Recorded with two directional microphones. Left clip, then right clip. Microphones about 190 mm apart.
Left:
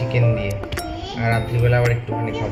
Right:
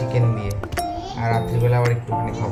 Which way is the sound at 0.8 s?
Centre (ahead or behind).